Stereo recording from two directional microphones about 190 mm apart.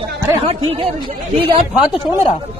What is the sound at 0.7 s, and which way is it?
Speech, 30° right (ahead or behind).